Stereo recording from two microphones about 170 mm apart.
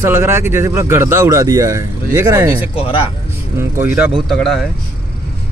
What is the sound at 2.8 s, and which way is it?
Speech, 35° left (ahead or behind).